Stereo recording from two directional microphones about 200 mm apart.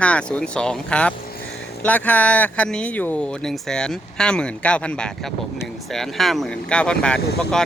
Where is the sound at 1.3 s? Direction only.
50° left (ahead or behind).